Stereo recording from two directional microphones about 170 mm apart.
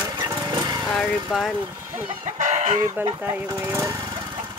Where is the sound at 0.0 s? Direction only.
20° right (ahead or behind).